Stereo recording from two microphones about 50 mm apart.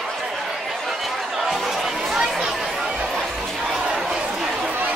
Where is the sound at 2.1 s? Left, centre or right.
Centre.